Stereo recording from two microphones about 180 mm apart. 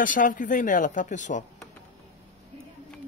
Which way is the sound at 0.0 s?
45° left (ahead or behind).